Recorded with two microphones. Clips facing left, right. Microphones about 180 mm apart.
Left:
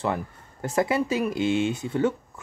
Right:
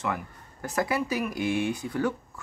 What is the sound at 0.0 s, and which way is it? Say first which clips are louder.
Speech: left 4 dB; 30° left (ahead or behind).